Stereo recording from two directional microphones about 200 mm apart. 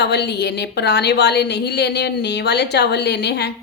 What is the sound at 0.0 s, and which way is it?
A woman's voice, 55° left (ahead or behind).